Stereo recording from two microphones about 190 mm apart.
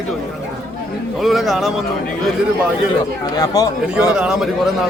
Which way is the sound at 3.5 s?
20° left (ahead or behind).